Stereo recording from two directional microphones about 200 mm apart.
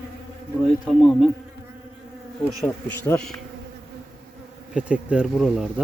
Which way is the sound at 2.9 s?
10° left (ahead or behind).